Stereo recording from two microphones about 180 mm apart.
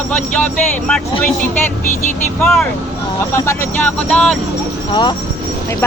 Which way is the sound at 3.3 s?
15° left (ahead or behind).